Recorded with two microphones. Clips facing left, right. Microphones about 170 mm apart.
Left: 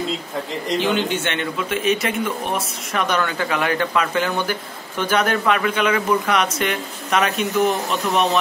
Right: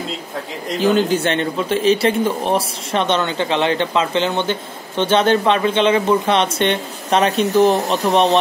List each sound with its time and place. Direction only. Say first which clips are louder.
0.7 s a man's voice: right 6 dB; 40° right (ahead or behind)